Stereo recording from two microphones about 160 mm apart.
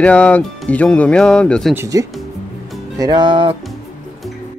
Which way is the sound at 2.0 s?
20° right (ahead or behind).